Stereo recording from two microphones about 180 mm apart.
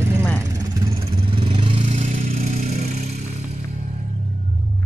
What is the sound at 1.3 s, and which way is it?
Vehicle, 25° right (ahead or behind).